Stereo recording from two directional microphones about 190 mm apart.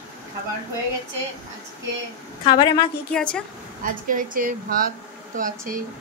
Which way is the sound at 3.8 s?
45° right (ahead or behind).